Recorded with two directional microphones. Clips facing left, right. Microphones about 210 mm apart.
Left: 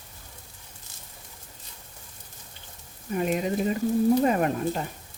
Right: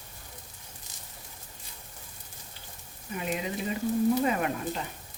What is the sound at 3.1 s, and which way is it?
Speech, 45° left (ahead or behind).